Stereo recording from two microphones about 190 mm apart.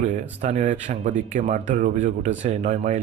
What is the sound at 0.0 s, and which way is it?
Speech, 40° right (ahead or behind).